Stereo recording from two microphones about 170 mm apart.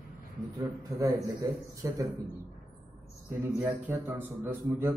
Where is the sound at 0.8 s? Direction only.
20° right (ahead or behind).